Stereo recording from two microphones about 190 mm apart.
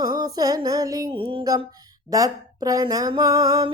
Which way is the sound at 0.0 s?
20° right (ahead or behind).